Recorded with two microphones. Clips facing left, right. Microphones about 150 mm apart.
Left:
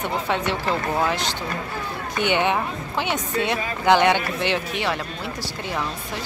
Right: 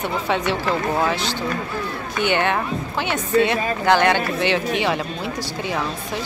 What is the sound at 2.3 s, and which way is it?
Speech, centre (ahead or behind).